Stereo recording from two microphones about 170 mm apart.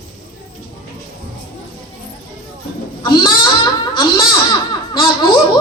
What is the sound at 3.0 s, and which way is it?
Baby cry, 25° left (ahead or behind).